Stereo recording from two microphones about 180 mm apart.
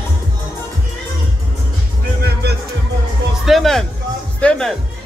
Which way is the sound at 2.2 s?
65° right (ahead or behind).